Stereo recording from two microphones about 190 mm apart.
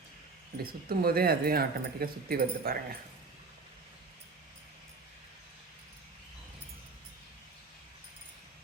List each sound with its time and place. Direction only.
0.6 s speech: 50° right (ahead or behind)